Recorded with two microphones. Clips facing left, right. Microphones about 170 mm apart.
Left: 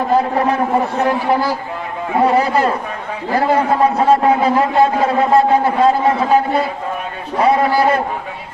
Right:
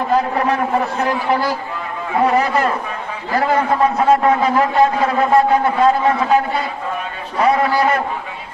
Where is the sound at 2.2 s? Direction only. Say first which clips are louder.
Left 2 dB; 30° left (ahead or behind).